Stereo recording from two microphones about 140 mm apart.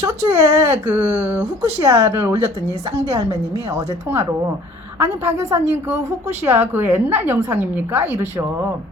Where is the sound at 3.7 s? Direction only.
20° right (ahead or behind).